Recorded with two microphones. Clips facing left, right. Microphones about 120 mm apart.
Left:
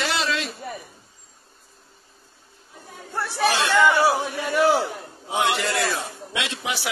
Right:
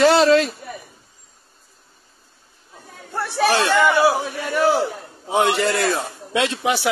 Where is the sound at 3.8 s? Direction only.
15° right (ahead or behind).